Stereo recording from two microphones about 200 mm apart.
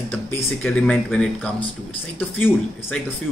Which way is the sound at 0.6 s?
5° left (ahead or behind).